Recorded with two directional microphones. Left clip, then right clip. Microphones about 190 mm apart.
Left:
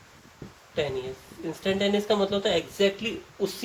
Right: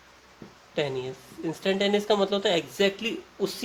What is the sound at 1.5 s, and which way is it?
A man's voice, 55° right (ahead or behind).